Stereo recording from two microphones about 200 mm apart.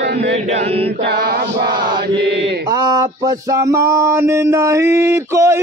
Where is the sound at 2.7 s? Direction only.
20° right (ahead or behind).